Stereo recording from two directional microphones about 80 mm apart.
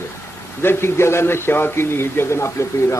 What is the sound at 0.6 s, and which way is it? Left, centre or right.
A man's voice, left.